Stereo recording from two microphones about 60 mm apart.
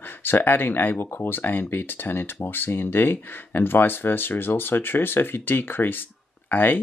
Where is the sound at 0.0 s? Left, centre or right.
Left.